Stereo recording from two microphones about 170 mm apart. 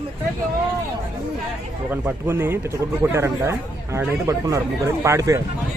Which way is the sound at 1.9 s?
10° right (ahead or behind).